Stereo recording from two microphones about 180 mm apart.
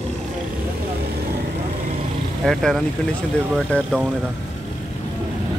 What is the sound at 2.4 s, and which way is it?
Speech, centre (ahead or behind).